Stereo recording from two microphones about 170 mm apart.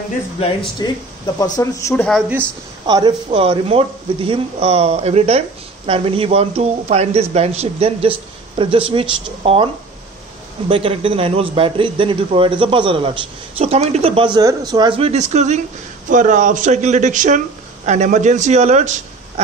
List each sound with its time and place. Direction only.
0.4 s speech: 25° left (ahead or behind)
3.3 s a man's voice: 35° right (ahead or behind)
10.7 s a man's voice: 35° right (ahead or behind)